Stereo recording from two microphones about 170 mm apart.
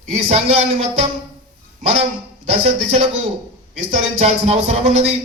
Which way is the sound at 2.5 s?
35° right (ahead or behind).